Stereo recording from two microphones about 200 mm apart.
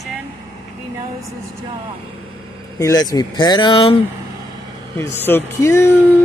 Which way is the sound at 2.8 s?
20° left (ahead or behind).